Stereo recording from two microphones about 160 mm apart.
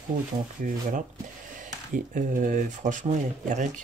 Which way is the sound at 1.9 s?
55° right (ahead or behind).